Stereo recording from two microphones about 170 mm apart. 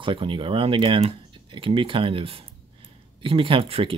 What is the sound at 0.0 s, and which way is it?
Speech, 30° right (ahead or behind).